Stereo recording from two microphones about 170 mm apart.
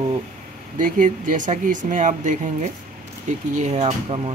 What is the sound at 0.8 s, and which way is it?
Speech, 50° right (ahead or behind).